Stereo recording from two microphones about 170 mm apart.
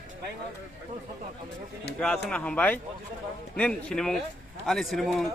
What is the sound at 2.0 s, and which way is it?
A man's voice, 5° left (ahead or behind).